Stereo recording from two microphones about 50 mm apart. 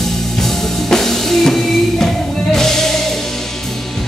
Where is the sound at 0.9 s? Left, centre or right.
Centre.